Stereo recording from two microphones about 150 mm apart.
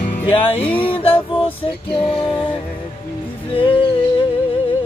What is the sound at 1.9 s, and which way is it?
Music, 5° left (ahead or behind).